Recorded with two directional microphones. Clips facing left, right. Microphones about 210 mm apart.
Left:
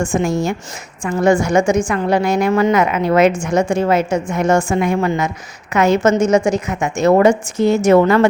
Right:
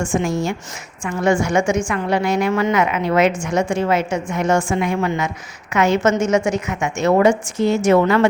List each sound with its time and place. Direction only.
0.0 s a woman's voice: 40° left (ahead or behind)